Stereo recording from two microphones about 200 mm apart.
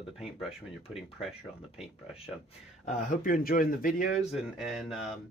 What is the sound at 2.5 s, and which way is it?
Speech, 35° left (ahead or behind).